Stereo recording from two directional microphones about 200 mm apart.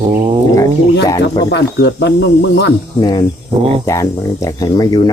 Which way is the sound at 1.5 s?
60° left (ahead or behind).